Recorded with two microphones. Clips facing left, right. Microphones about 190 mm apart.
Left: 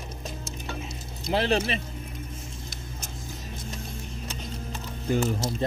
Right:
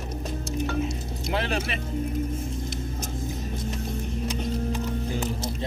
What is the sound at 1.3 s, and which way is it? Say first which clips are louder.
Speech: left 4 dB; 30° left (ahead or behind).